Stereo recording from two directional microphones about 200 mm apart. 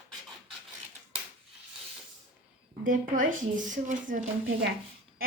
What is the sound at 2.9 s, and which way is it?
A woman's voice, 40° right (ahead or behind).